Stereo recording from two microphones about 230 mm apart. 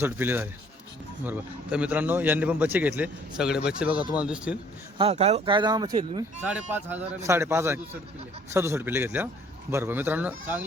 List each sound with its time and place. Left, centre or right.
0.0 s a man's voice: centre
4.9 s speech: right
6.4 s a man's voice: centre